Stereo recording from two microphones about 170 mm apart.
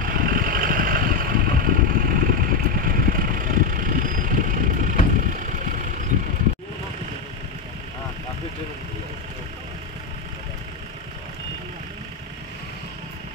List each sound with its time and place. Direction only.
0.0 s vehicle: 55° right (ahead or behind)